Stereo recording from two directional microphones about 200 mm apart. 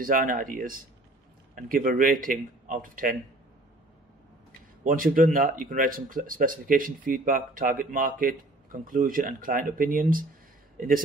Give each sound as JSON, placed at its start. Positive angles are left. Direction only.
{"t": 0.0, "sound": "speech", "side_deg": -45}
{"t": 4.5, "sound": "speech", "side_deg": -45}